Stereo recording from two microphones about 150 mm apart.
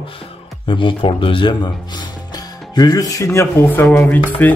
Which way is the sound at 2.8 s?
25° left (ahead or behind).